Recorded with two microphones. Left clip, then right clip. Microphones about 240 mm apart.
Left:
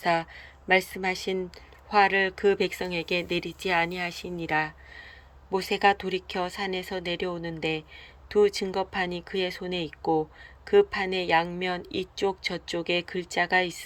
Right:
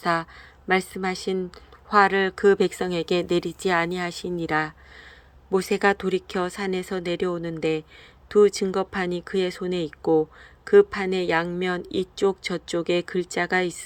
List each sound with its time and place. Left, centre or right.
0.0 s speech: centre